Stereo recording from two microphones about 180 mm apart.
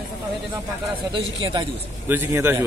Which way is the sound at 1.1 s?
30° right (ahead or behind).